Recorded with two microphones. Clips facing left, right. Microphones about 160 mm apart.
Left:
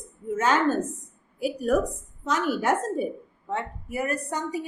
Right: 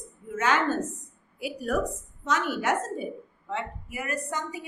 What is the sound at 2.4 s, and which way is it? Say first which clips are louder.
A woman's voice: left 3 dB; 40° left (ahead or behind).